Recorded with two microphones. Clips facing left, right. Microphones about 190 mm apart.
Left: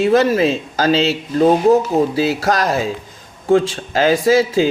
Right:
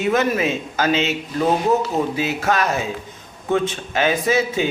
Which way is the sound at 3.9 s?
35° left (ahead or behind).